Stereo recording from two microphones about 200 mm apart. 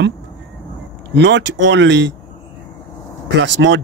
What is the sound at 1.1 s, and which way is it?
Speech, 65° right (ahead or behind).